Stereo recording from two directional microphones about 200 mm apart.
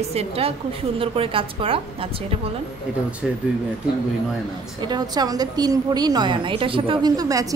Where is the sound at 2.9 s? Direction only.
5° right (ahead or behind).